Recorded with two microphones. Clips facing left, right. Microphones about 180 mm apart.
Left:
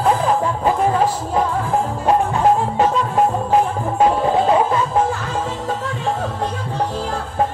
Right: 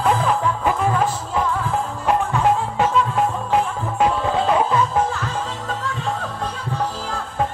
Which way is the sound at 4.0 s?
30° left (ahead or behind).